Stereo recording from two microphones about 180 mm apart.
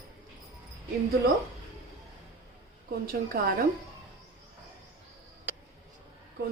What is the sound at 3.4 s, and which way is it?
Speech, 60° right (ahead or behind).